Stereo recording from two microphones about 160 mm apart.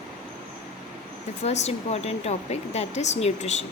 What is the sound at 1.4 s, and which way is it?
Speech, 45° left (ahead or behind).